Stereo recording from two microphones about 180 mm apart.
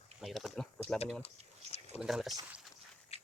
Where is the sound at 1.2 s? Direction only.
35° left (ahead or behind).